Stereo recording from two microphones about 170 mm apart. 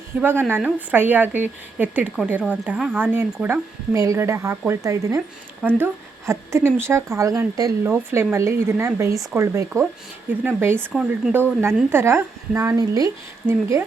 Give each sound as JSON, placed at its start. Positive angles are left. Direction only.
{"t": 0.2, "sound": "speech", "side_deg": -10}